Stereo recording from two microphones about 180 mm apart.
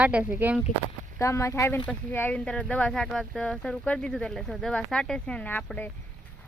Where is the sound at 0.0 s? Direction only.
5° right (ahead or behind).